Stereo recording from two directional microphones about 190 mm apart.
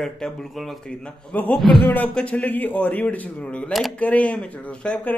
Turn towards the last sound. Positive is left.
turn(degrees=5)  # may be behind; listen again after turning